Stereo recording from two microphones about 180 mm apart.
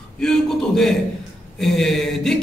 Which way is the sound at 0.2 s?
5° left (ahead or behind).